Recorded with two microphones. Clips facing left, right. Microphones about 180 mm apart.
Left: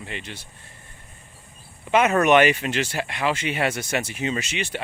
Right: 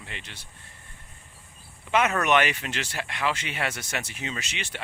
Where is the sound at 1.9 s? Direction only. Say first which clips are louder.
Left 5 dB; 10° left (ahead or behind).